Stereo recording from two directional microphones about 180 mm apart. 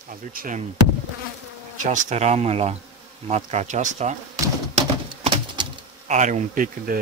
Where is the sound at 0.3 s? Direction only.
50° right (ahead or behind).